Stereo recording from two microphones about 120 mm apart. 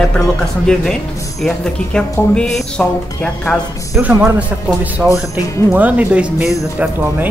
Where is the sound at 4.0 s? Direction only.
15° right (ahead or behind).